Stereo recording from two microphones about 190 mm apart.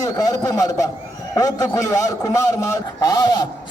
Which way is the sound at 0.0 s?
20° left (ahead or behind).